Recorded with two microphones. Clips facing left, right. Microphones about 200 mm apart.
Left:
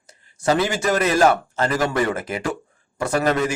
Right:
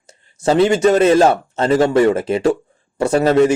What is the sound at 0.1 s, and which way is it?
Speech, 25° right (ahead or behind).